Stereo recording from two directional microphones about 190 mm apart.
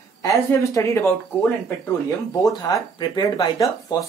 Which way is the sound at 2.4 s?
20° left (ahead or behind).